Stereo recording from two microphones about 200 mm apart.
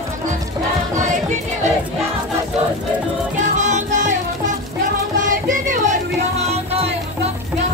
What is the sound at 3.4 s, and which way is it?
Music, 35° right (ahead or behind).